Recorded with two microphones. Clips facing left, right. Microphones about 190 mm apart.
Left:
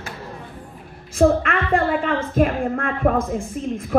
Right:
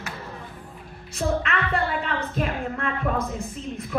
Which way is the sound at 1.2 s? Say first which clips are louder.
Left 8 dB; 50° left (ahead or behind).